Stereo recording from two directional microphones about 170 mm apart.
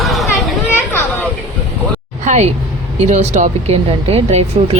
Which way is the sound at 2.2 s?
40° right (ahead or behind).